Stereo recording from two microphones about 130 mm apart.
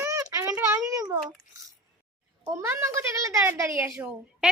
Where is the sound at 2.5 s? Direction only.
20° right (ahead or behind).